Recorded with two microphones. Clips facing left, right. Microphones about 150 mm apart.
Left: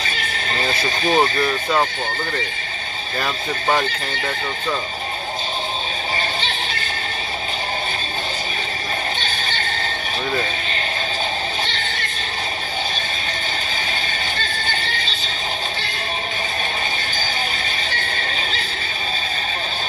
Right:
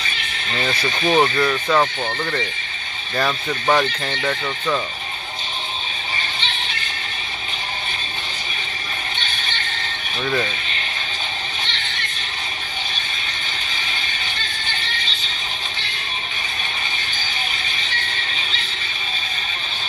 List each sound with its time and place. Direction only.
0.0 s speech: 40° left (ahead or behind)
3.2 s speech: 25° left (ahead or behind)
6.4 s music: 40° left (ahead or behind)
9.2 s horse: 40° left (ahead or behind)
11.6 s a sound: 40° left (ahead or behind)
14.3 s music: 40° left (ahead or behind)
17.8 s a sound: 40° left (ahead or behind)